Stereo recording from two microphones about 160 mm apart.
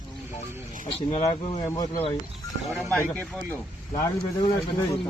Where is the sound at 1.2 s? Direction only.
20° left (ahead or behind).